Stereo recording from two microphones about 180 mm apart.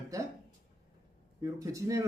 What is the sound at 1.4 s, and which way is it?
Speech, 15° right (ahead or behind).